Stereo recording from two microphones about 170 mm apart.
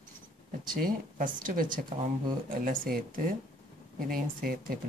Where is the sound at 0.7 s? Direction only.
55° right (ahead or behind).